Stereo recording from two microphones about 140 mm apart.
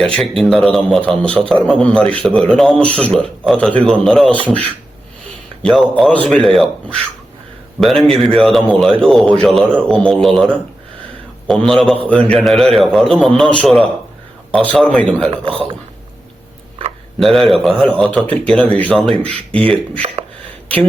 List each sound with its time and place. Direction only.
0.5 s speech: 5° left (ahead or behind)
15.3 s a man's voice: 40° right (ahead or behind)
17.2 s speech: centre (ahead or behind)